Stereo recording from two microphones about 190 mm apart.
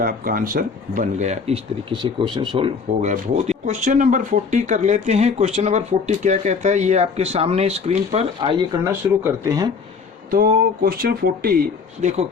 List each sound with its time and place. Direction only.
0.0 s speech: 50° right (ahead or behind); by 8.6 s 25° right (ahead or behind)
8.8 s speech: 15° right (ahead or behind)
10.3 s speech: 50° right (ahead or behind)